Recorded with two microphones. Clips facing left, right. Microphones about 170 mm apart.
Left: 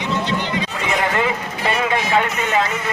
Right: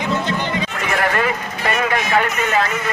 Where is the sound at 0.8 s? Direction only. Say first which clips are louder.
Right 1 dB; 20° left (ahead or behind).